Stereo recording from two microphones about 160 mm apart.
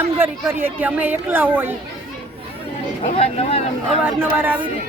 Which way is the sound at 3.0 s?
40° left (ahead or behind).